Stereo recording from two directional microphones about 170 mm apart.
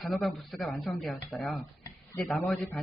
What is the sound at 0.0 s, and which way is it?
Speech, centre (ahead or behind).